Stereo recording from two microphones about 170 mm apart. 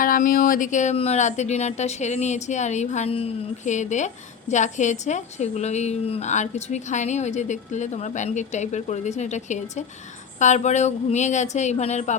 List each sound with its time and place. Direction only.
0.0 s speech: 55° left (ahead or behind)